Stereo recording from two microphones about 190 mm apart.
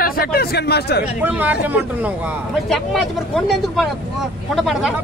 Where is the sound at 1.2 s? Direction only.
10° right (ahead or behind).